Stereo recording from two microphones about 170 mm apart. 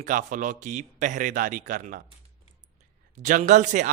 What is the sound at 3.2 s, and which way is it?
Speech, 45° right (ahead or behind).